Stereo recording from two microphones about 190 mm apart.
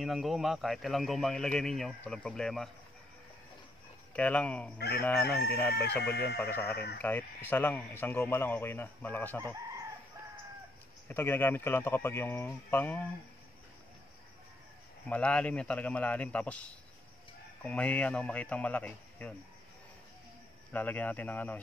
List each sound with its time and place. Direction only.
0.0 s a man's voice: centre (ahead or behind)
4.1 s a man's voice: 5° left (ahead or behind)
4.7 s speech: 55° left (ahead or behind)
5.0 s a man's voice: 10° left (ahead or behind)
6.0 s speech: 60° left (ahead or behind)
7.0 s a man's voice: 10° left (ahead or behind)
11.1 s a man's voice: 10° left (ahead or behind)
15.0 s a man's voice: 5° left (ahead or behind)
20.7 s a man's voice: 10° left (ahead or behind)